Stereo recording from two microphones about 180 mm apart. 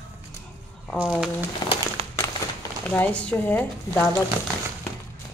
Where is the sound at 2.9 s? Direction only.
10° left (ahead or behind).